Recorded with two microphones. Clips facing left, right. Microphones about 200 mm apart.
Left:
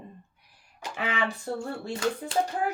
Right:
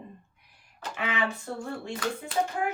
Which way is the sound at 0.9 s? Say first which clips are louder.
Even; 35° left (ahead or behind).